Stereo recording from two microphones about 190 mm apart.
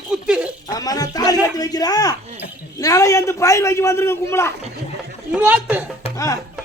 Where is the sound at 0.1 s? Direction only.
5° right (ahead or behind).